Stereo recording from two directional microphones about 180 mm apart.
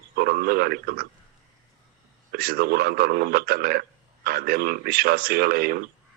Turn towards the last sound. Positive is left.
turn(degrees=-55)  # may be behind; listen again after turning